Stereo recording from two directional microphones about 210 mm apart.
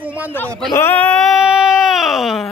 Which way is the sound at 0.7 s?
10° left (ahead or behind).